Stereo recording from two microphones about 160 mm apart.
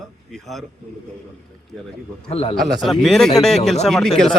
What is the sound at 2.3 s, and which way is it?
Speech, 40° left (ahead or behind).